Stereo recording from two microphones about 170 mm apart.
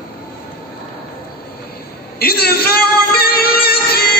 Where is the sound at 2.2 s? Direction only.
65° left (ahead or behind).